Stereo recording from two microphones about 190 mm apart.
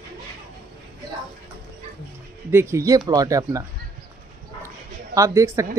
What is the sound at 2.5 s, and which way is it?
Speech, 15° right (ahead or behind).